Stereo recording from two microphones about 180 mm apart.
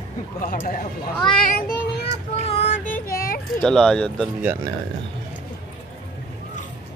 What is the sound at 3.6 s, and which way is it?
Speech, 5° left (ahead or behind).